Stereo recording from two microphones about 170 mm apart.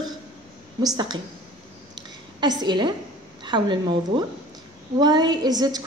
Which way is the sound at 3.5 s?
25° right (ahead or behind).